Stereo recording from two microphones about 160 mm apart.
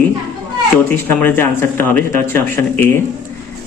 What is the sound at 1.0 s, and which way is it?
Speech, 10° left (ahead or behind).